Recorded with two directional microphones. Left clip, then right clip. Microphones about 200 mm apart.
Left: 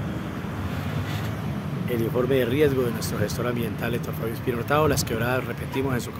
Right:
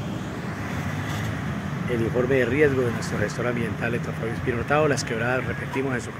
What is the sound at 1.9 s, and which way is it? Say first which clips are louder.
Speech: right 1 dB; 5° left (ahead or behind).